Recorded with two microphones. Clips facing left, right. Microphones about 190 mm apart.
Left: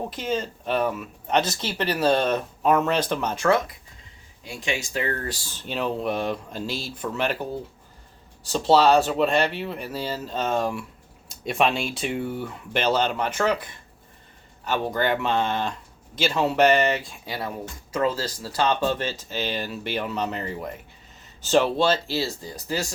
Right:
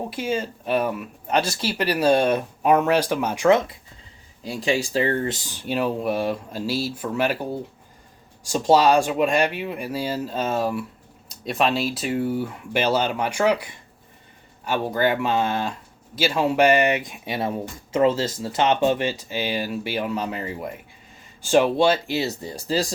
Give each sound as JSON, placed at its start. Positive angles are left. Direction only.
{"t": 0.1, "sound": "speech", "side_deg": -10}
{"t": 4.4, "sound": "speech", "side_deg": -35}
{"t": 8.4, "sound": "speech", "side_deg": -10}